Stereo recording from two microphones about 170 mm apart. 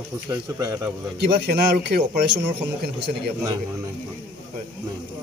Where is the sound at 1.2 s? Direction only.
75° right (ahead or behind).